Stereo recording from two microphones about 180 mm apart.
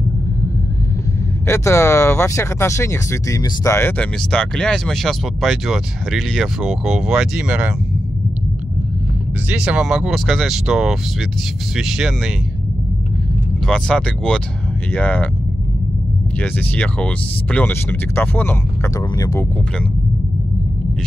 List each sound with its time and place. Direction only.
1.4 s speech: 15° left (ahead or behind); by 7.7 s 5° right (ahead or behind)
9.5 s speech: 5° right (ahead or behind)
13.7 s speech: 5° left (ahead or behind)
16.3 s speech: 10° left (ahead or behind)